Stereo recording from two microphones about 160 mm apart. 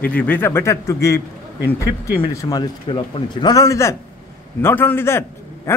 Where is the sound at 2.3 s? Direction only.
25° left (ahead or behind).